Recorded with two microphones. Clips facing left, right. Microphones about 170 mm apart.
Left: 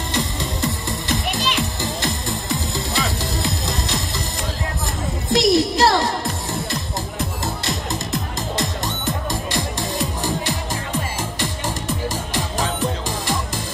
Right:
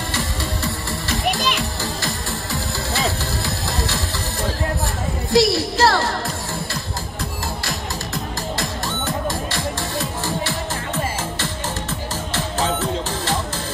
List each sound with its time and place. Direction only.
0.1 s music: 20° left (ahead or behind)
5.3 s music: 20° left (ahead or behind)
8.5 s music: 20° left (ahead or behind)